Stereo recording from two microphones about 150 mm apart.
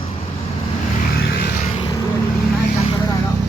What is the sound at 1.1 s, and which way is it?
Vehicle, 90° left.